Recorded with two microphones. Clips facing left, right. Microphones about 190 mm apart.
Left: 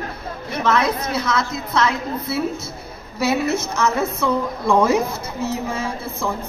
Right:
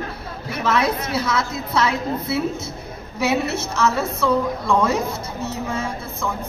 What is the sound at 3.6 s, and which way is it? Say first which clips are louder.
Speech: left 1 dB; 15° left (ahead or behind).